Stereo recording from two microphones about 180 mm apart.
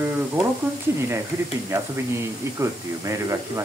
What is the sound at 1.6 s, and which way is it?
Speech, 15° right (ahead or behind).